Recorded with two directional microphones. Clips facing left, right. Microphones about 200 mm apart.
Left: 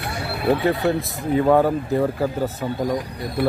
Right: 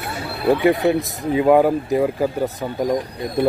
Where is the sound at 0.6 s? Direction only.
20° right (ahead or behind).